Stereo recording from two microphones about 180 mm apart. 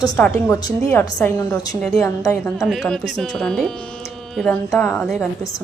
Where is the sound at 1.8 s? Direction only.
5° left (ahead or behind).